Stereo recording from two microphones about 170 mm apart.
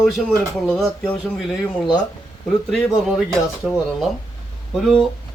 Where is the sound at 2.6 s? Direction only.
5° left (ahead or behind).